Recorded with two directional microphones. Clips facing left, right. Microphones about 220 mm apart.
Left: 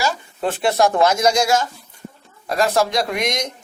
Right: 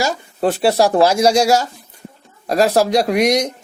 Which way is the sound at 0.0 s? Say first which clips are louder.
Right 4 dB; 35° right (ahead or behind).